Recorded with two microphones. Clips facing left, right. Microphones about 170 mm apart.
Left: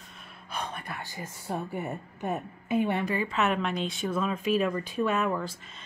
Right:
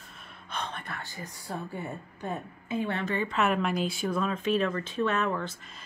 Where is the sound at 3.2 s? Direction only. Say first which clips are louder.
Right 1 dB; centre (ahead or behind).